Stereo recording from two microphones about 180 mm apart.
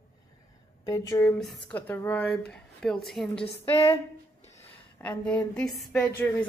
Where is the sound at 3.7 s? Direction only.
30° left (ahead or behind).